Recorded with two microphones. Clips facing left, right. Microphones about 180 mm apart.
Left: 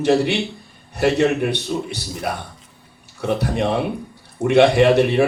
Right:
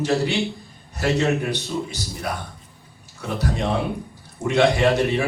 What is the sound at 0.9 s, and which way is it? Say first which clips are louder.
A man's voice: left 4 dB; 60° left (ahead or behind).